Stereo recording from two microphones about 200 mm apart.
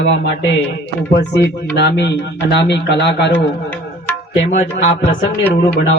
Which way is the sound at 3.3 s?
10° left (ahead or behind).